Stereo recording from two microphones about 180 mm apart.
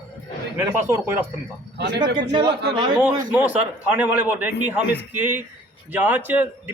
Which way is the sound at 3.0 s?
10° right (ahead or behind).